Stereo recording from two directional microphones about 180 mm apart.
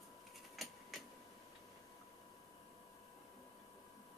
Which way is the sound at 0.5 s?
Centre (ahead or behind).